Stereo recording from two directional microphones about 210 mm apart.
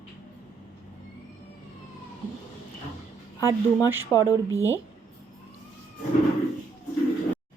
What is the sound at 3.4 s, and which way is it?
Speech, 10° right (ahead or behind).